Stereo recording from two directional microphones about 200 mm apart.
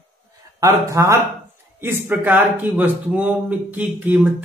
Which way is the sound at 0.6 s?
15° right (ahead or behind).